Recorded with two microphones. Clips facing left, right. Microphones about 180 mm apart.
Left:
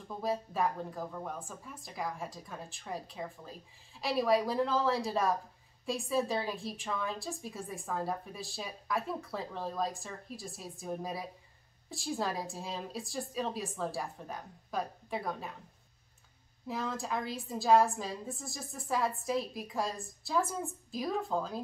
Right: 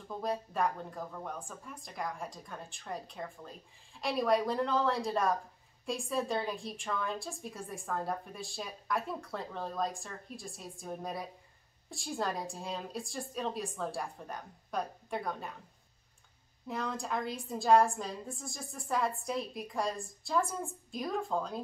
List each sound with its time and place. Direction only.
0.2 s a woman's voice: centre (ahead or behind)
16.6 s a woman's voice: centre (ahead or behind)